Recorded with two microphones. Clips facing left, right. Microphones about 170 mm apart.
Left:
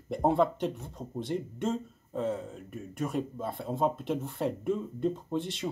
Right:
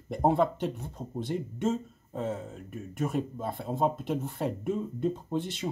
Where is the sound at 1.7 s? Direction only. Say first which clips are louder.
Right 3 dB; 45° right (ahead or behind).